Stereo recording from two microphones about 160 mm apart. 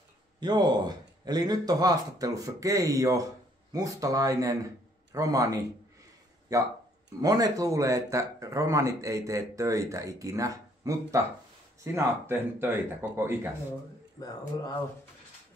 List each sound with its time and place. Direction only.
0.4 s a man's voice: 25° right (ahead or behind)
14.2 s a man's voice: 20° left (ahead or behind)